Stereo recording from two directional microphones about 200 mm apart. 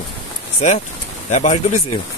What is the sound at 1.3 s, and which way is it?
Speech, 35° left (ahead or behind).